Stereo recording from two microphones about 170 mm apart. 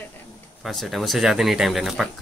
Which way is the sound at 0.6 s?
Centre (ahead or behind).